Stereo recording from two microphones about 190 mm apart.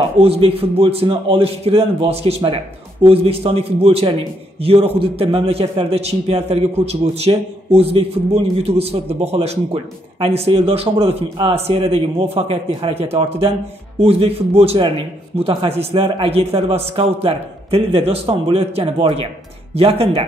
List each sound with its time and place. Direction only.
0.2 s a man's voice: 30° right (ahead or behind)